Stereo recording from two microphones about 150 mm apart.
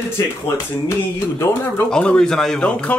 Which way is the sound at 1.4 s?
15° left (ahead or behind).